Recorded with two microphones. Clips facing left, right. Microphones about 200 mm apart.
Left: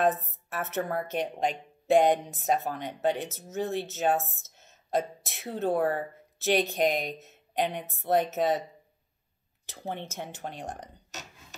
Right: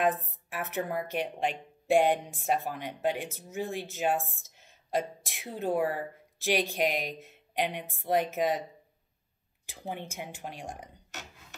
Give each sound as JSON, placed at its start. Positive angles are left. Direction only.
{"t": 0.0, "sound": "a woman's voice", "side_deg": -10}
{"t": 1.2, "sound": "speech", "side_deg": 40}
{"t": 1.9, "sound": "a woman's voice", "side_deg": -10}
{"t": 9.7, "sound": "speech", "side_deg": -10}